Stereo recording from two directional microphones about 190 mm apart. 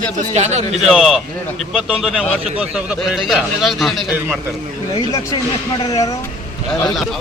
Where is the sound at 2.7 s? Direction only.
5° right (ahead or behind).